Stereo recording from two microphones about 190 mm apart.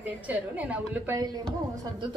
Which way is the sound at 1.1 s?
20° right (ahead or behind).